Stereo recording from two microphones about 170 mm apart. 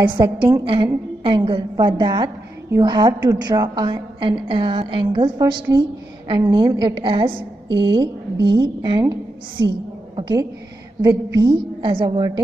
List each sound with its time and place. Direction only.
0.0 s a woman's voice: 25° right (ahead or behind)
10.1 s a woman's voice: 25° right (ahead or behind)